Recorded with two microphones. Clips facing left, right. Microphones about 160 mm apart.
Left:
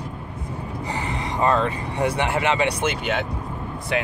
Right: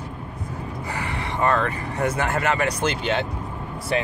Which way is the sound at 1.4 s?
20° left (ahead or behind).